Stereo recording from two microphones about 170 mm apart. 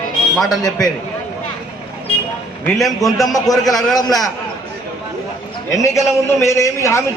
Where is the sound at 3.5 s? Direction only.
Centre (ahead or behind).